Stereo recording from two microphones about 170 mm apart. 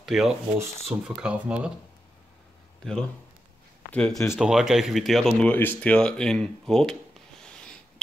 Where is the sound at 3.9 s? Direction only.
5° left (ahead or behind).